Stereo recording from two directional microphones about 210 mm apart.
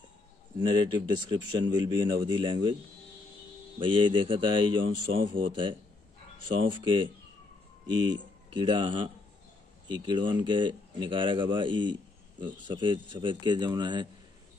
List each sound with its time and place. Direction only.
0.6 s speech: 20° right (ahead or behind)
3.8 s speech: 25° right (ahead or behind)